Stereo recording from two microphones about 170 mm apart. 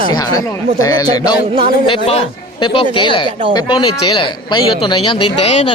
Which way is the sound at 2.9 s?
30° left (ahead or behind).